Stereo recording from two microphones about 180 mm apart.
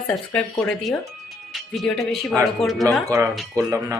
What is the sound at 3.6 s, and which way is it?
Speech, 15° right (ahead or behind).